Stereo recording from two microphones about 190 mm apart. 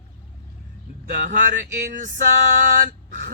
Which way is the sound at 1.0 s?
50° right (ahead or behind).